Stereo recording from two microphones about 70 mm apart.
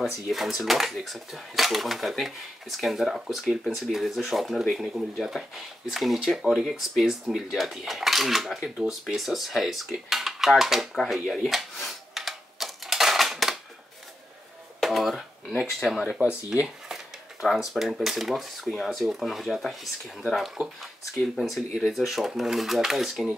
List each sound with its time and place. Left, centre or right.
0.3 s speech: centre
11.2 s typewriter: centre
14.8 s a sound: centre
16.2 s speech: centre
16.6 s speech: centre